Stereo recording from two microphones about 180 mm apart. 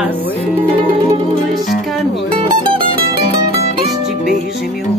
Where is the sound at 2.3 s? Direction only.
30° right (ahead or behind).